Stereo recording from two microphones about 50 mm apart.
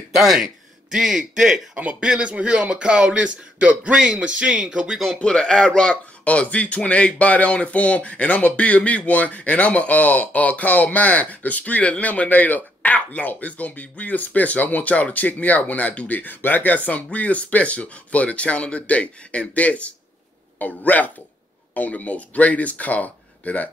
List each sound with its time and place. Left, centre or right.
0.2 s speech: centre
1.8 s speech: right
5.2 s speech: centre